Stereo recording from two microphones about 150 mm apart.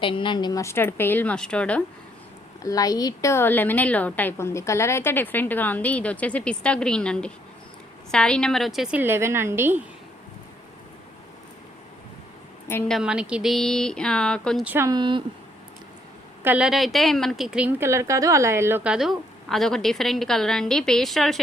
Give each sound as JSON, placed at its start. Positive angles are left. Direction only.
{"t": 0.0, "sound": "a woman's voice", "side_deg": 35}
{"t": 2.6, "sound": "a woman's voice", "side_deg": 25}
{"t": 12.9, "sound": "a woman's voice", "side_deg": -5}
{"t": 14.6, "sound": "a woman's voice", "side_deg": -10}
{"t": 14.8, "sound": "speech", "side_deg": -30}
{"t": 16.4, "sound": "a woman's voice", "side_deg": -10}